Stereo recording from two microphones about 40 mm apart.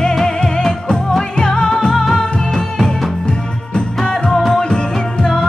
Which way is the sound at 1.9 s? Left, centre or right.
Centre.